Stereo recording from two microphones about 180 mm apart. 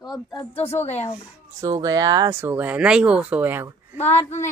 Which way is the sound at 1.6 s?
20° right (ahead or behind).